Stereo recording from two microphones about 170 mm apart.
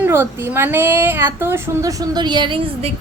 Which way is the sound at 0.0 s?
10° right (ahead or behind).